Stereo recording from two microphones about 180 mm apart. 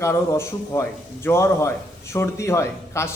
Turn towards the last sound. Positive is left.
turn(degrees=15)  # may be behind; listen again after turning